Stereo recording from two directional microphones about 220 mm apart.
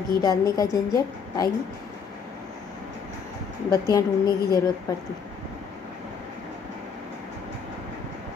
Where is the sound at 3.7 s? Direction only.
15° left (ahead or behind).